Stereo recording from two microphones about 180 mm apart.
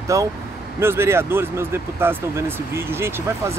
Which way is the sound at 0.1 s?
15° right (ahead or behind).